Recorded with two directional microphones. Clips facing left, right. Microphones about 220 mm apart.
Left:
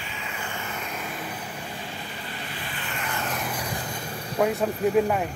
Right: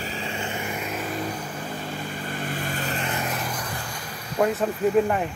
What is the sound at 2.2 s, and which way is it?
Vehicle, 50° right (ahead or behind).